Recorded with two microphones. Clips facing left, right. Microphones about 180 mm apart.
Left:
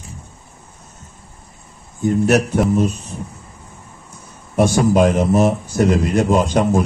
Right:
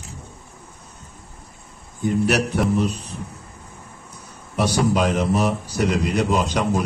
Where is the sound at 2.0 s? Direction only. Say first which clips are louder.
Left 5 dB; 45° left (ahead or behind).